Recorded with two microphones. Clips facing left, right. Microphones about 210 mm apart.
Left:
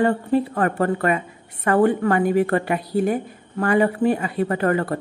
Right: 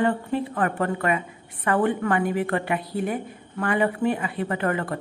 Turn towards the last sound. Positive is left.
turn(degrees=40)  # may be behind; listen again after turning